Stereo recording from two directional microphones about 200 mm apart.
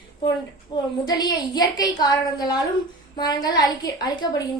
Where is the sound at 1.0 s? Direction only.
20° left (ahead or behind).